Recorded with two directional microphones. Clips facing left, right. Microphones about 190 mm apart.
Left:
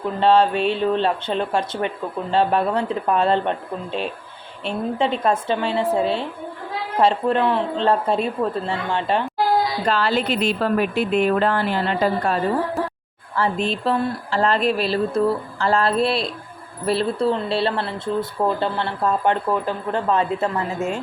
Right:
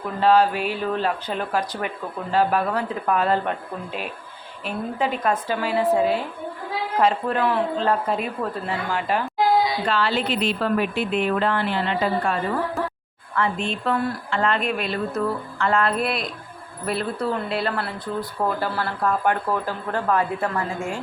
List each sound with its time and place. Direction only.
0.2 s speech: 25° left (ahead or behind)
4.6 s speech: 25° left (ahead or behind)
9.8 s speech: 40° left (ahead or behind); by 21.0 s 20° left (ahead or behind)